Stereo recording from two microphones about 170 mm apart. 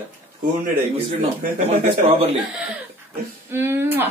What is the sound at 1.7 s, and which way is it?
Speech, 35° right (ahead or behind).